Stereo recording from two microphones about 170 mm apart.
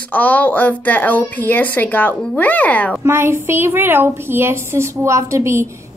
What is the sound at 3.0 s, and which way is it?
A woman's voice, 15° right (ahead or behind).